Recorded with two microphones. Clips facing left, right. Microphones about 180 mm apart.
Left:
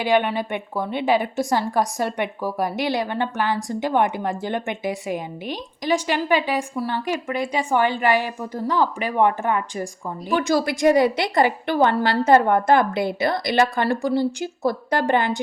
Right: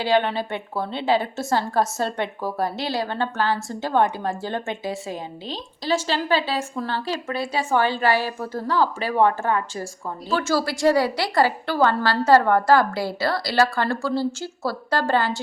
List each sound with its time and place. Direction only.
0.0 s a woman's voice: 15° left (ahead or behind)